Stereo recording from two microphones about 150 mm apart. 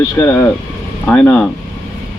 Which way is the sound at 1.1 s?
10° left (ahead or behind).